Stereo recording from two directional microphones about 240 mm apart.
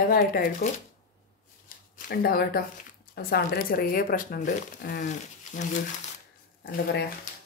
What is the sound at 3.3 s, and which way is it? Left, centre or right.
Speech, left.